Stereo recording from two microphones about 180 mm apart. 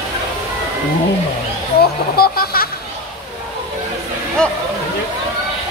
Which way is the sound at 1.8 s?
55° left (ahead or behind).